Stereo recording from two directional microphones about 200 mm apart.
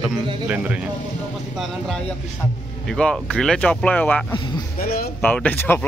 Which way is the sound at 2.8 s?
5° left (ahead or behind).